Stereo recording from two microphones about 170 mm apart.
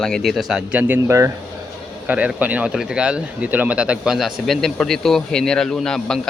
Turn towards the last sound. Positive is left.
turn(degrees=5)  # may be behind; listen again after turning